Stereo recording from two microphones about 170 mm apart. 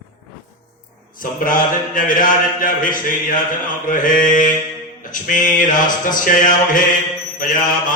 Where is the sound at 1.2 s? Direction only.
50° left (ahead or behind).